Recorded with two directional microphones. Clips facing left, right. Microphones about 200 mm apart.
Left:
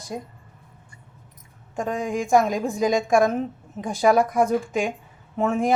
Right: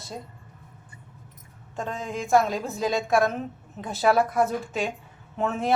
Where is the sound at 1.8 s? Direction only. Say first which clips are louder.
Left 6 dB; 15° left (ahead or behind).